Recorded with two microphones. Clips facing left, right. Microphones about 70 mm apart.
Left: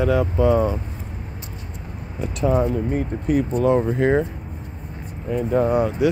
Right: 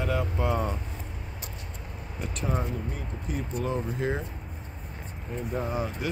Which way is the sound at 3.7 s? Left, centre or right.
Left.